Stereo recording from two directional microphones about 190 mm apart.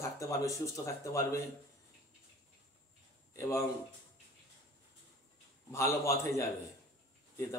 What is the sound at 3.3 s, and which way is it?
Speech, 15° left (ahead or behind).